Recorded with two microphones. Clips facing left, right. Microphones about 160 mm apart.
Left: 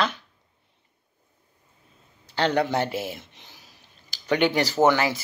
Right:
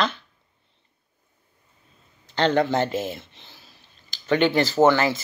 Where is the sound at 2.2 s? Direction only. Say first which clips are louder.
Right 2 dB; 10° left (ahead or behind).